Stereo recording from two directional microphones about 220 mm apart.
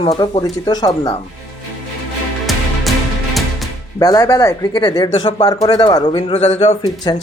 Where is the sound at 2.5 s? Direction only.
Centre (ahead or behind).